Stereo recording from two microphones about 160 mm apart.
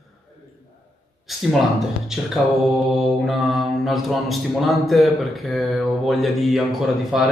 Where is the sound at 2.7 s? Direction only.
Centre (ahead or behind).